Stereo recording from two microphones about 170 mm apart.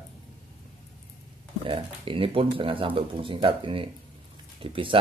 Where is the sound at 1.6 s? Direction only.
30° right (ahead or behind).